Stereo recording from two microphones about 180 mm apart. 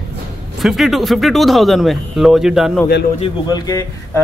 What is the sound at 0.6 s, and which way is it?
Speech, centre (ahead or behind).